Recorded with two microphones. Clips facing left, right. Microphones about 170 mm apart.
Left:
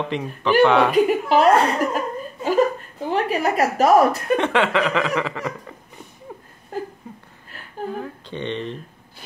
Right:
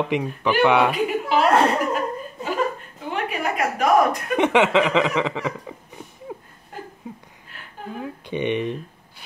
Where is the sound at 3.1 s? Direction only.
35° left (ahead or behind).